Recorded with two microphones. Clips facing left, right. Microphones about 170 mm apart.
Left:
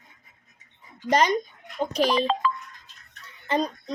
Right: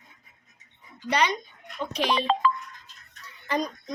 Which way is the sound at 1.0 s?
45° left (ahead or behind).